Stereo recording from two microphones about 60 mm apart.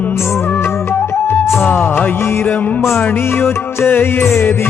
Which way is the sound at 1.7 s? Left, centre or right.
Left.